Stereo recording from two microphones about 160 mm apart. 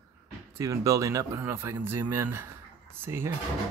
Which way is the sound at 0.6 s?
20° right (ahead or behind).